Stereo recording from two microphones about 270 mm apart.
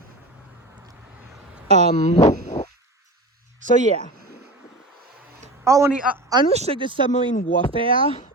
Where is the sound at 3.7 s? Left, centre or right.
Right.